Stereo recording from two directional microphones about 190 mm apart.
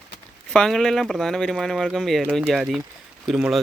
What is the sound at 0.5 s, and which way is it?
Speech, centre (ahead or behind).